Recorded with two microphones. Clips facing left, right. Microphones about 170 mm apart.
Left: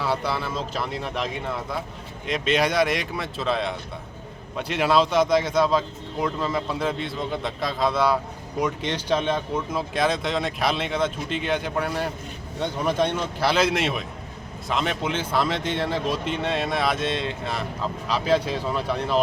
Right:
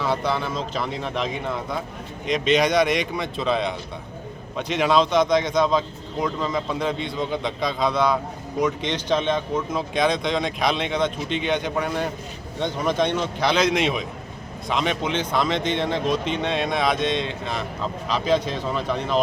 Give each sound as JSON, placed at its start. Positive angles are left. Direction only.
{"t": 0.0, "sound": "speech", "side_deg": 10}